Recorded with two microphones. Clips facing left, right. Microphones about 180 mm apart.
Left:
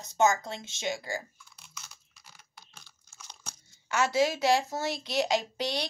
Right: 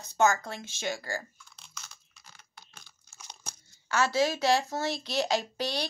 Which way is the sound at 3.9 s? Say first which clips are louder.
Even; 20° left (ahead or behind).